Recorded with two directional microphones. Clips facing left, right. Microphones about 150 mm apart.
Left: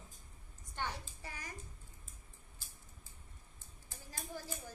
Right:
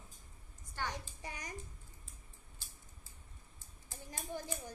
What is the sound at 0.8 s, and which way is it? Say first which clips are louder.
Speech: right 1 dB; 15° right (ahead or behind).